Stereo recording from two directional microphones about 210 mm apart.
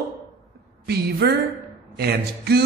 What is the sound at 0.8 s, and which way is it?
A woman's voice, 50° right (ahead or behind).